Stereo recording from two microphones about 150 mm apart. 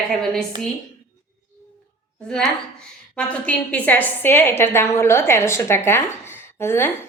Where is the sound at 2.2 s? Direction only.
5° left (ahead or behind).